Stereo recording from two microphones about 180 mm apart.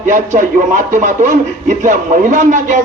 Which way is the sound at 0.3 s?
45° right (ahead or behind).